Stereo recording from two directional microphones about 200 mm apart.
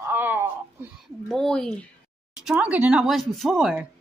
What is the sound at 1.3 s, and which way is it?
Speech, 5° left (ahead or behind).